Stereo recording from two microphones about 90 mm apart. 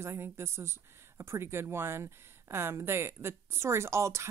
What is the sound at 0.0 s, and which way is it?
Speech, 30° right (ahead or behind).